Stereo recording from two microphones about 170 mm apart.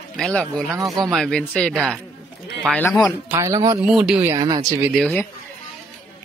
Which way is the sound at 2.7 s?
5° left (ahead or behind).